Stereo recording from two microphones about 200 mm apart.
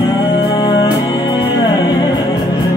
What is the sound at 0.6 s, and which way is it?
Music, 20° left (ahead or behind).